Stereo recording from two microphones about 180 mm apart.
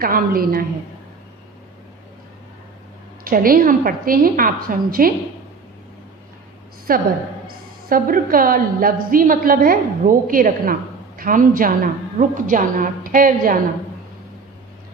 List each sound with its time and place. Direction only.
0.0 s a woman's voice: 55° right (ahead or behind)
3.2 s a woman's voice: 50° right (ahead or behind)
6.9 s a woman's voice: 55° right (ahead or behind)